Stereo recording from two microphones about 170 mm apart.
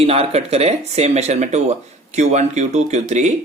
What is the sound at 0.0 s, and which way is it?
Speech, 35° right (ahead or behind).